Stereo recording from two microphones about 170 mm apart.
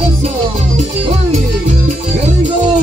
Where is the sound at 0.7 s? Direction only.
40° right (ahead or behind).